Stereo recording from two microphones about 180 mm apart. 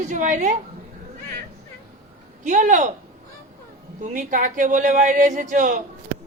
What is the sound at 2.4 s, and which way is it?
Speech, 45° right (ahead or behind).